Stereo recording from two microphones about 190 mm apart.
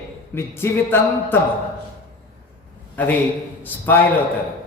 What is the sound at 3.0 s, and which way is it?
A man's voice, 10° left (ahead or behind).